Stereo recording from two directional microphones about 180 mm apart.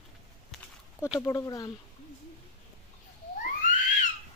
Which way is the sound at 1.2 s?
15° left (ahead or behind).